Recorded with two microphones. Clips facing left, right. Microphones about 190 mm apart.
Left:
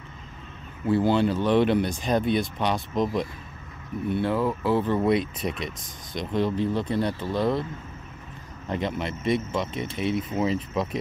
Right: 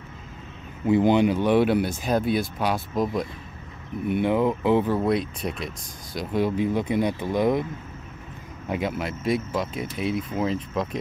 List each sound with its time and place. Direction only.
0.8 s speech: 15° right (ahead or behind)
4.1 s speech: 15° right (ahead or behind)
4.9 s speech: centre (ahead or behind); by 7.6 s 15° right (ahead or behind)
8.6 s speech: 5° right (ahead or behind)